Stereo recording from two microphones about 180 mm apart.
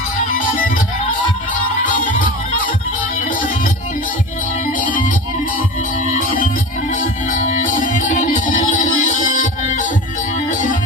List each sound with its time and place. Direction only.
1.8 s music: 45° left (ahead or behind)
4.8 s music: 45° left (ahead or behind)
6.9 s music: 45° left (ahead or behind)